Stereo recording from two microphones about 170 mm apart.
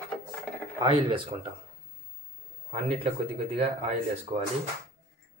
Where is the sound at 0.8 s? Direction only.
30° right (ahead or behind).